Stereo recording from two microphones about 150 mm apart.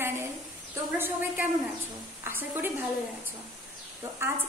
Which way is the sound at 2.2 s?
15° right (ahead or behind).